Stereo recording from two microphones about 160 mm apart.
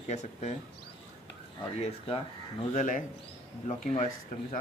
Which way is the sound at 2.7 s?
55° left (ahead or behind).